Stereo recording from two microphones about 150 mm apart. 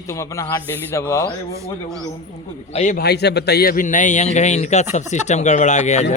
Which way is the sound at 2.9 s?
90° left.